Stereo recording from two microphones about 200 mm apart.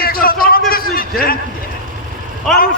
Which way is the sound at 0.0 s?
50° left (ahead or behind).